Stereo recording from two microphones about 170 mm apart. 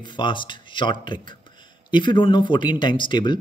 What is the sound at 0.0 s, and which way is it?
Speech, 25° left (ahead or behind).